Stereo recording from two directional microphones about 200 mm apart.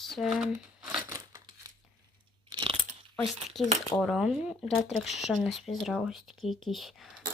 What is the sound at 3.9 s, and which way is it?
Speech, centre (ahead or behind).